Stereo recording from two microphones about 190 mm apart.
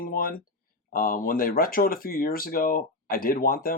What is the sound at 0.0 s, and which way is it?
Speech, 50° left (ahead or behind).